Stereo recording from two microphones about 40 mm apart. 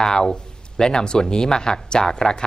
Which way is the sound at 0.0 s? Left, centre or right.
Centre.